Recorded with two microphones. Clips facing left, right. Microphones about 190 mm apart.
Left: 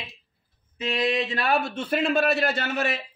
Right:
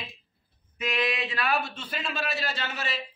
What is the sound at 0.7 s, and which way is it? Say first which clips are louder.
A man's voice: left 4 dB; 30° left (ahead or behind).